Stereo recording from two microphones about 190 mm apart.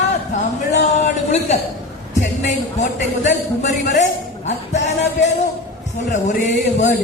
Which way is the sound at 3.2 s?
40° left (ahead or behind).